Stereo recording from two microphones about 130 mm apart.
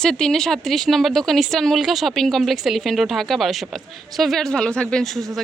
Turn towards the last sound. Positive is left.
turn(degrees=0)  # may be behind; listen again after turning